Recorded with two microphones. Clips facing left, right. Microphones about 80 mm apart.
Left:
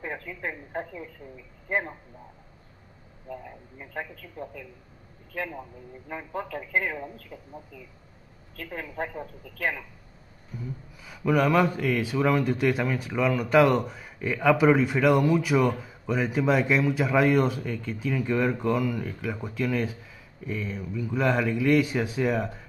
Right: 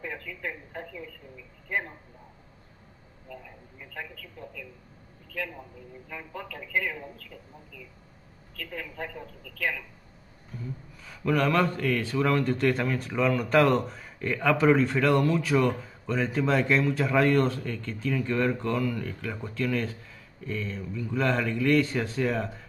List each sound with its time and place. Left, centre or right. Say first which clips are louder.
0.0 s a man's voice: left 2 dB; left
3.3 s a man's voice: left 5 dB; left
10.6 s a man's voice: left 1 dB; centre